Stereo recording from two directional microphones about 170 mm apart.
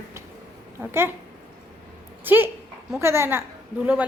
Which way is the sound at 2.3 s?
10° right (ahead or behind).